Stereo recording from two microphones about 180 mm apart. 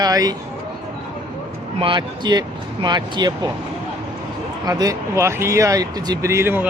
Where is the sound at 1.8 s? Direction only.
25° right (ahead or behind).